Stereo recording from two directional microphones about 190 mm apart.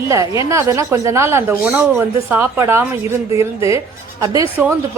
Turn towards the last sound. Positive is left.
turn(degrees=-10)  # may be behind; listen again after turning